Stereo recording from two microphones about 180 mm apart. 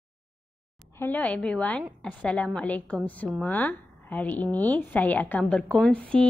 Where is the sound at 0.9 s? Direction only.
10° left (ahead or behind).